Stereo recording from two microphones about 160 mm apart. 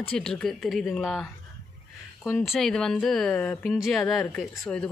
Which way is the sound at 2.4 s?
Centre (ahead or behind).